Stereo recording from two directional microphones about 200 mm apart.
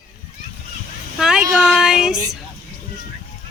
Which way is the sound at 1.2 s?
5° right (ahead or behind).